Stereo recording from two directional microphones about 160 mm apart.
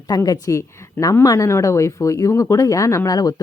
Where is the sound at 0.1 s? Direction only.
20° left (ahead or behind).